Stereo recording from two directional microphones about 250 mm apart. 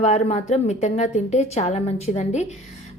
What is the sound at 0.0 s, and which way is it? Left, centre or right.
A woman's voice, left.